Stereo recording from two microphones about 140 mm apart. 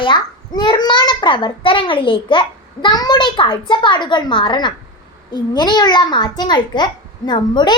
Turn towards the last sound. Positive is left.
turn(degrees=30)  # may be behind; listen again after turning